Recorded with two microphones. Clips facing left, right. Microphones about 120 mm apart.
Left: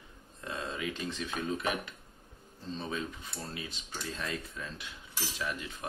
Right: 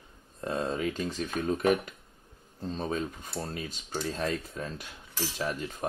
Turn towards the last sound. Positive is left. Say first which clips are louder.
# right 5 dB
turn(degrees=-40)  # may be behind; listen again after turning